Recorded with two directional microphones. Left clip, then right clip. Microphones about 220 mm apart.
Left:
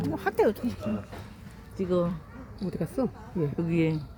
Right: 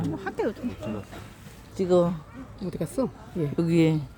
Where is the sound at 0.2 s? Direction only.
50° left (ahead or behind).